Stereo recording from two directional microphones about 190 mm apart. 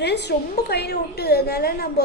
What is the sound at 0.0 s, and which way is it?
A woman's voice, 60° left (ahead or behind).